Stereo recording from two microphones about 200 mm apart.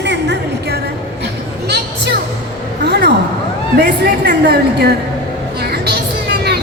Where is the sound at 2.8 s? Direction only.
55° right (ahead or behind).